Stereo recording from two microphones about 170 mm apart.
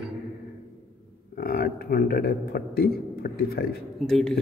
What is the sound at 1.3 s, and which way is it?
Speech, 65° left (ahead or behind).